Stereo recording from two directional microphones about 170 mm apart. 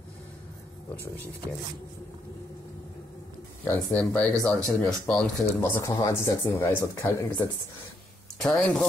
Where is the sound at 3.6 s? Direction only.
10° left (ahead or behind).